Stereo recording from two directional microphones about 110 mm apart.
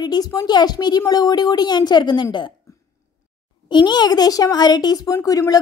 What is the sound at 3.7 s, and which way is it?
Speech, 40° left (ahead or behind).